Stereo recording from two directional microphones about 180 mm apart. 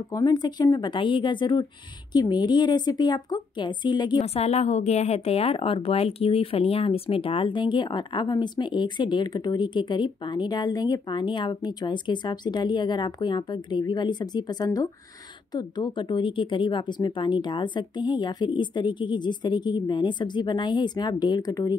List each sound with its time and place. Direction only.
0.1 s a woman's voice: 20° left (ahead or behind)
4.2 s a woman's voice: 35° left (ahead or behind)